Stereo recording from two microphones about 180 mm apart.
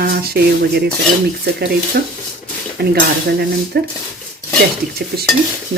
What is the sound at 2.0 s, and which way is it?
Stir, 55° right (ahead or behind).